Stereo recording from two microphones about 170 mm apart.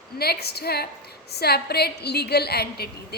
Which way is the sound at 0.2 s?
70° left (ahead or behind).